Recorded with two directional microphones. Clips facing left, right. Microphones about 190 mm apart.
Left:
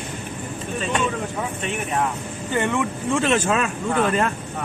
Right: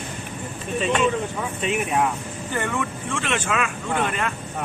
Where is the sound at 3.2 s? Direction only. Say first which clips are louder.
Left 5 dB; 35° left (ahead or behind).